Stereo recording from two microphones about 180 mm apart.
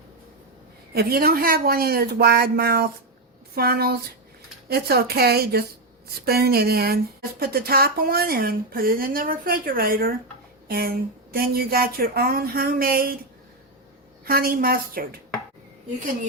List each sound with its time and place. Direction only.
0.9 s speech: 55° right (ahead or behind)
14.3 s speech: 55° right (ahead or behind)